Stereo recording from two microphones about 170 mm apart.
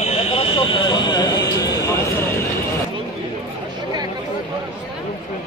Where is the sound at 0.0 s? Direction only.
35° left (ahead or behind); by 2.2 s 20° left (ahead or behind).